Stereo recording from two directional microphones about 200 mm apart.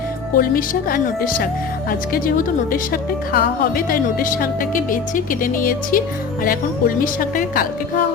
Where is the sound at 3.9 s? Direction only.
45° left (ahead or behind).